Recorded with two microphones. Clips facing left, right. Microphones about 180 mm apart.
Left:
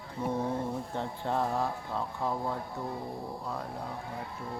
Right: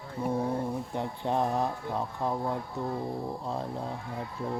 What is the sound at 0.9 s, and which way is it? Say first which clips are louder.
Mantra: right 2 dB; 15° right (ahead or behind).